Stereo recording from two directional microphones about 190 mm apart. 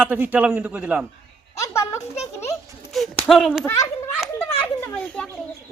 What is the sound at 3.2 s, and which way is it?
Speech, centre (ahead or behind).